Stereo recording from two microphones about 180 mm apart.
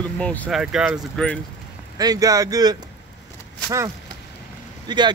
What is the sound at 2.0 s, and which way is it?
Speech, 20° right (ahead or behind).